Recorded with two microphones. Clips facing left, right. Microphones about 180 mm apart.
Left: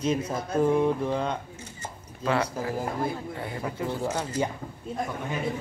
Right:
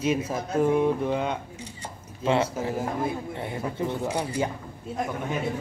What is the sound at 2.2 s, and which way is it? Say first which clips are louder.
Speech: right 3 dB; 25° right (ahead or behind).